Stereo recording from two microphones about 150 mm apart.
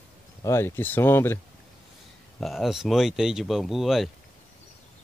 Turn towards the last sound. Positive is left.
turn(degrees=0)  # may be behind; listen again after turning